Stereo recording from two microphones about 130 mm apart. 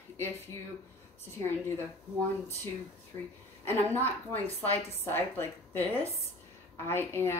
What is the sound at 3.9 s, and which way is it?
A woman's voice, 15° left (ahead or behind).